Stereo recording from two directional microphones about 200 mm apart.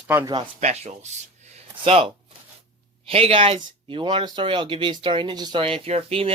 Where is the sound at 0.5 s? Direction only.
35° right (ahead or behind).